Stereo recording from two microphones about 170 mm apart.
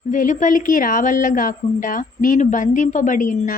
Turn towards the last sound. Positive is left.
turn(degrees=50)  # may be behind; listen again after turning